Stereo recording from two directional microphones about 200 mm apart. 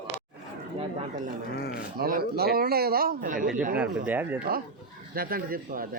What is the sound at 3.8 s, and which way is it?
Speech, 10° right (ahead or behind).